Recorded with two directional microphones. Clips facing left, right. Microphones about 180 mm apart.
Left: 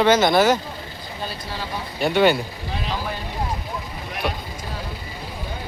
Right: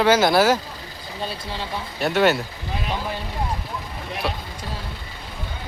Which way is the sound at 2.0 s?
Centre (ahead or behind).